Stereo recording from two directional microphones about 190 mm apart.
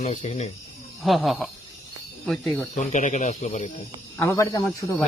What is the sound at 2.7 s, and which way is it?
Speech, 40° left (ahead or behind).